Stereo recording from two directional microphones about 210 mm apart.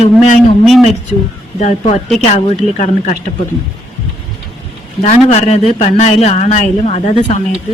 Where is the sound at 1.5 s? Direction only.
35° left (ahead or behind).